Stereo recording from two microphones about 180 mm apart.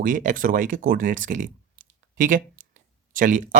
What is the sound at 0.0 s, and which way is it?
Speech, 45° right (ahead or behind).